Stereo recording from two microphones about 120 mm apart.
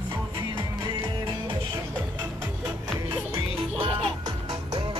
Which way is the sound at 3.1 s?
50° right (ahead or behind).